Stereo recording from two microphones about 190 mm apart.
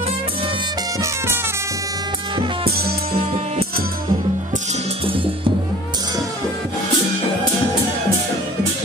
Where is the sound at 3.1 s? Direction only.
30° right (ahead or behind).